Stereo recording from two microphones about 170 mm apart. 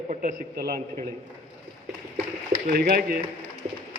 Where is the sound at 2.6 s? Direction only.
60° right (ahead or behind).